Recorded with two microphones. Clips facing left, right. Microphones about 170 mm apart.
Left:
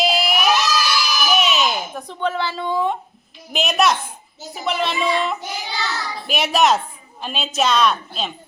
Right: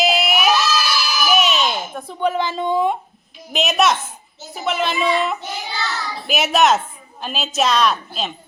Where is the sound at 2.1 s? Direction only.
15° right (ahead or behind).